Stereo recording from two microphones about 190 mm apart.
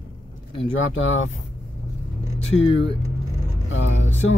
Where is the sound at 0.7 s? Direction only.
90° left.